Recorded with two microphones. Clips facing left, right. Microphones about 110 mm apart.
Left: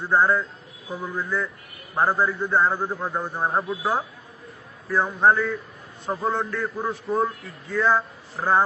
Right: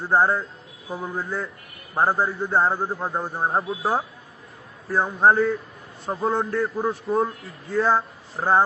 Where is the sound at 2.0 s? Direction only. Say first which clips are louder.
Even; 30° right (ahead or behind).